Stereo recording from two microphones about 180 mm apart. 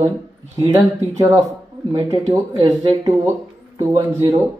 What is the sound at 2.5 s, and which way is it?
Speech, 25° right (ahead or behind).